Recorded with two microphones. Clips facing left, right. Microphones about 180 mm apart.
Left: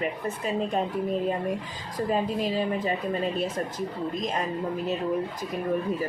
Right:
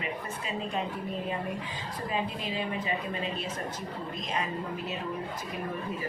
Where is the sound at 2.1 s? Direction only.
40° left (ahead or behind).